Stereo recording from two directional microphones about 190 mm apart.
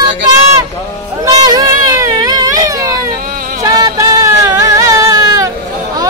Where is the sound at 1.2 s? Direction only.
20° right (ahead or behind).